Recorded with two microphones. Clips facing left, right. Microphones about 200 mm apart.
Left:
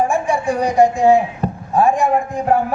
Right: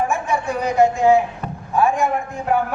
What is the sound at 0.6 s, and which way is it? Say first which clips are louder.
A man's voice: left 2 dB; 35° left (ahead or behind).